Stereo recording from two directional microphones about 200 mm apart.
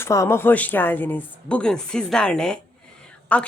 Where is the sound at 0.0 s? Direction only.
15° left (ahead or behind).